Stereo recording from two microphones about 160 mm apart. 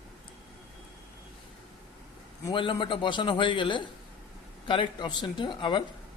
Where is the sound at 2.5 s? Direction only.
30° left (ahead or behind).